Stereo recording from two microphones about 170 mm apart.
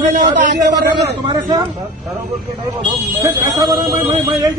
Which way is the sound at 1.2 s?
25° right (ahead or behind).